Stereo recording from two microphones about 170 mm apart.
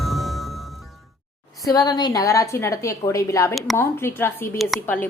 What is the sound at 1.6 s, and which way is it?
A woman's voice, 25° left (ahead or behind).